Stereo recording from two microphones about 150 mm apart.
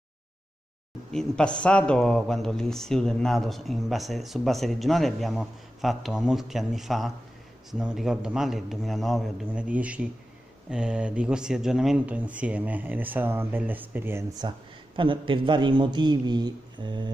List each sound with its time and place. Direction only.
1.1 s speech: 5° left (ahead or behind); by 14.2 s 15° right (ahead or behind)
14.4 s a man's voice: 30° right (ahead or behind)